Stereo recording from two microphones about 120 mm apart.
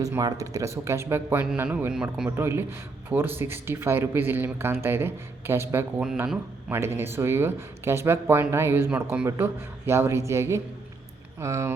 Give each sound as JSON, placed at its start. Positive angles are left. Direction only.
{"t": 0.2, "sound": "a man's voice", "side_deg": -30}
{"t": 2.3, "sound": "speech", "side_deg": -20}